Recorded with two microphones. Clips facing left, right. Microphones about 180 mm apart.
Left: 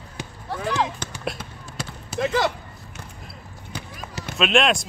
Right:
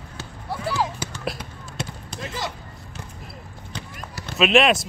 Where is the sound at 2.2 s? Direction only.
70° left (ahead or behind).